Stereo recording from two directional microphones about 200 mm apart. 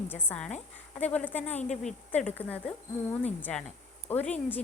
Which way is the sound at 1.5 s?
35° left (ahead or behind).